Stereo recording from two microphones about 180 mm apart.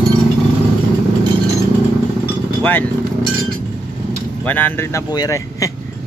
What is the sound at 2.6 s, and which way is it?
Speech, 10° left (ahead or behind).